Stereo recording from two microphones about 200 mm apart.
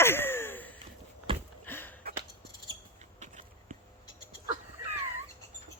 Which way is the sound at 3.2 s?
35° right (ahead or behind).